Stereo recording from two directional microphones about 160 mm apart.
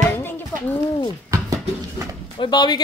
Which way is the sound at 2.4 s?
25° left (ahead or behind).